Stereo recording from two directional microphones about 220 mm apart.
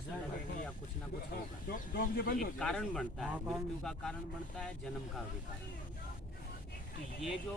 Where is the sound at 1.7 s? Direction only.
40° left (ahead or behind).